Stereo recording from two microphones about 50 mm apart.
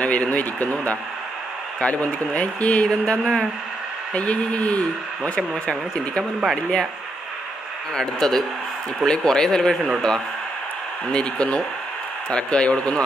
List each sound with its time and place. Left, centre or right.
0.0 s a man's voice: left
3.1 s speech: centre
4.1 s a man's voice: left
6.5 s speech: centre
7.9 s speech: centre
11.1 s a man's voice: left